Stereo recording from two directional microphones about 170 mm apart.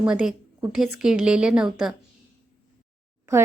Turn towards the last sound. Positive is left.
turn(degrees=-15)  # may be behind; listen again after turning